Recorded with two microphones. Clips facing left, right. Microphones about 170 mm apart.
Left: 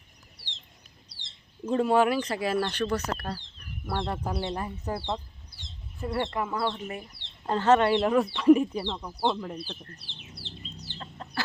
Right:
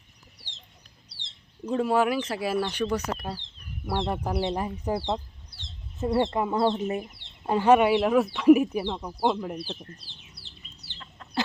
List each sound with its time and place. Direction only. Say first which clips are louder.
1.6 s speech: left 1 dB; centre (ahead or behind); by 7.1 s 25° right (ahead or behind)
7.4 s speech: right 2 dB; 10° right (ahead or behind)
10.2 s bird: left 7 dB; 30° left (ahead or behind)
10.9 s chicken: left 4 dB; 40° left (ahead or behind)